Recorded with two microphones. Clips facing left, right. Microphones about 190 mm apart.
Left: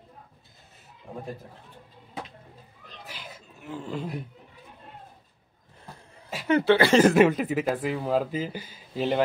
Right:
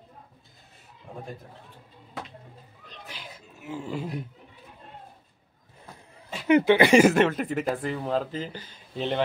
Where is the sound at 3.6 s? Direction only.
10° right (ahead or behind).